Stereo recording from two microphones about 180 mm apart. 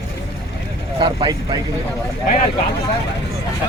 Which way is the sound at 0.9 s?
25° right (ahead or behind).